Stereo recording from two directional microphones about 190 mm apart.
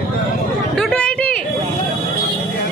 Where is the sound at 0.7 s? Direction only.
5° left (ahead or behind).